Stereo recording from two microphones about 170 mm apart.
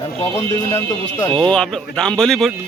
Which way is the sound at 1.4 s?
5° left (ahead or behind).